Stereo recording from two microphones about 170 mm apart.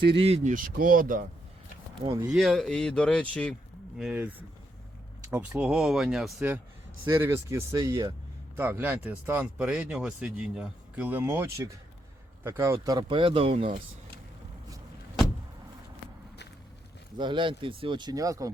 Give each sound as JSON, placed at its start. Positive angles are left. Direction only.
{"t": 0.2, "sound": "speech", "side_deg": -40}
{"t": 2.3, "sound": "speech", "side_deg": 0}
{"t": 3.9, "sound": "speech", "side_deg": -5}
{"t": 7.0, "sound": "speech", "side_deg": -15}
{"t": 17.2, "sound": "speech", "side_deg": -30}